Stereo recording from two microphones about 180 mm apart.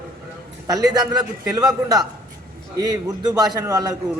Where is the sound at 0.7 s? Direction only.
20° right (ahead or behind).